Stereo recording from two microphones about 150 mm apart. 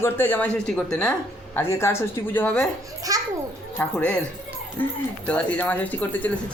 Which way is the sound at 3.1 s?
25° right (ahead or behind).